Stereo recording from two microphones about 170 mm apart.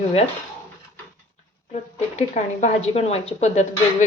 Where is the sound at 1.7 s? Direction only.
45° left (ahead or behind).